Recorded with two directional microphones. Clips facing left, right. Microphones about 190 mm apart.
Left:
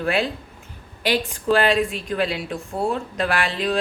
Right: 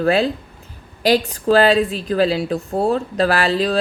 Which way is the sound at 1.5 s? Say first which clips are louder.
Right 5 dB; 35° right (ahead or behind).